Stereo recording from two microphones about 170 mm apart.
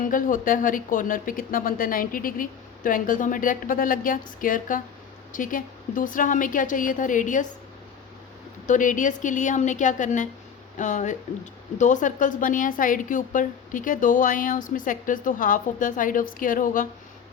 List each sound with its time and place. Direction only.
0.0 s a woman's voice: 50° left (ahead or behind)
8.6 s a woman's voice: 50° left (ahead or behind)